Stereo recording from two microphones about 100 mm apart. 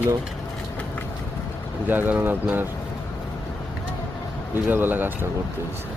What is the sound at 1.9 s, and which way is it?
Speech, 15° right (ahead or behind).